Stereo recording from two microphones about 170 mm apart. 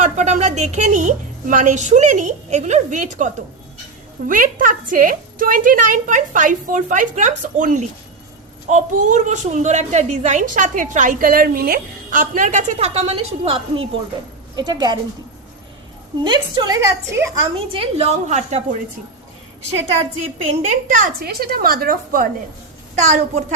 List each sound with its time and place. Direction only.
0.0 s a woman's voice: 45° right (ahead or behind); by 14.9 s 25° right (ahead or behind)
16.2 s a woman's voice: 25° right (ahead or behind)
17.7 s a woman's voice: 30° right (ahead or behind)
20.0 s a woman's voice: 40° right (ahead or behind); by 22.3 s 60° right (ahead or behind)
23.0 s a woman's voice: 40° right (ahead or behind)